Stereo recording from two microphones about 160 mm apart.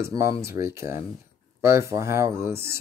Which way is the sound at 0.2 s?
20° right (ahead or behind).